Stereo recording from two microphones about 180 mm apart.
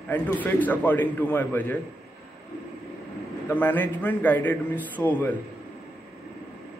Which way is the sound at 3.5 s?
10° left (ahead or behind).